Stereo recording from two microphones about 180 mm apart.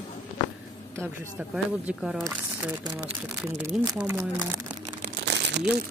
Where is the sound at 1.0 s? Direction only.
5° right (ahead or behind).